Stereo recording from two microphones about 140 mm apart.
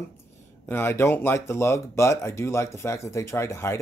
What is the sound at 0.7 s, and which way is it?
Speech, 15° left (ahead or behind).